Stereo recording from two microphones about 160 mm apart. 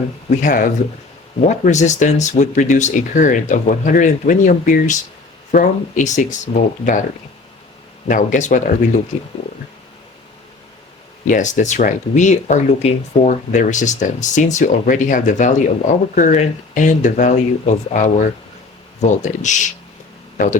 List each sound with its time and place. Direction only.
0.4 s speech: 55° left (ahead or behind)
8.0 s speech: 50° left (ahead or behind)
11.3 s speech: 50° left (ahead or behind)